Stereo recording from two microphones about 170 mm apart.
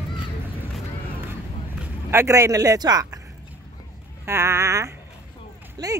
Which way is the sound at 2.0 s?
15° right (ahead or behind).